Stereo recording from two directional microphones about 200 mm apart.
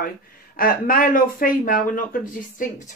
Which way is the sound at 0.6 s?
45° left (ahead or behind).